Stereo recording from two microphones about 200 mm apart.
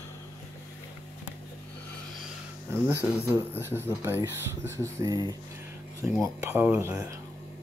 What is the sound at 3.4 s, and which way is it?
Speech, 10° right (ahead or behind).